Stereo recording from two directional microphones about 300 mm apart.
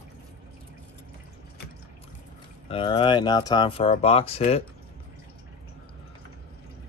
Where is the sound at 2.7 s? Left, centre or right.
Centre.